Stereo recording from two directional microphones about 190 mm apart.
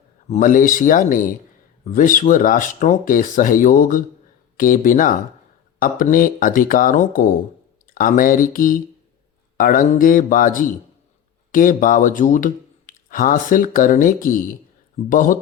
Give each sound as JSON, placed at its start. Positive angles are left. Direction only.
{"t": 0.3, "sound": "speech", "side_deg": 45}